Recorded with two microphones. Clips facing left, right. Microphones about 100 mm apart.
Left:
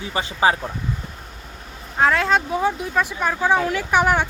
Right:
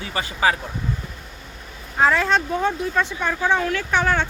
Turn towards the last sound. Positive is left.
turn(degrees=15)  # may be behind; listen again after turning